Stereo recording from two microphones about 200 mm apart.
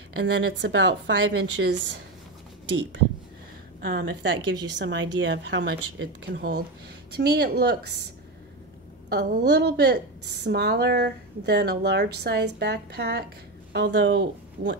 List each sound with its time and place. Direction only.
0.2 s a woman's voice: 65° right (ahead or behind)
3.8 s a woman's voice: 65° right (ahead or behind)
9.1 s a woman's voice: 55° right (ahead or behind)